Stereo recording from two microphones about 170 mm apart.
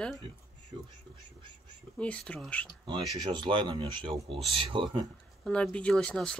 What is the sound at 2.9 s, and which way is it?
Speech, 25° right (ahead or behind).